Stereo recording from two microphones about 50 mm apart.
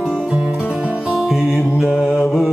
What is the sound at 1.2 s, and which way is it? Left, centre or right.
Music, centre.